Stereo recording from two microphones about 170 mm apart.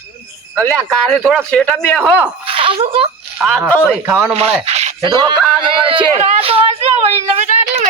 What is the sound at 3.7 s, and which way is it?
Speech, 10° left (ahead or behind).